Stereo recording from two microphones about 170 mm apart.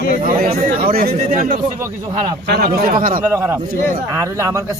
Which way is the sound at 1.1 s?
45° right (ahead or behind).